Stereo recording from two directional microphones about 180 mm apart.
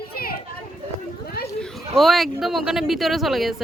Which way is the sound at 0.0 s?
55° left (ahead or behind).